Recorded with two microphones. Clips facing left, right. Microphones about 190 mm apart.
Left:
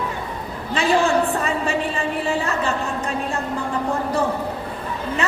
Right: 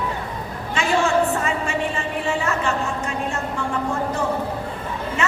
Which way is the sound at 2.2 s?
35° left (ahead or behind).